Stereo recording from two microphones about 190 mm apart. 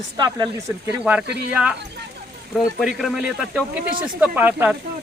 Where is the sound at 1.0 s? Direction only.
5° right (ahead or behind).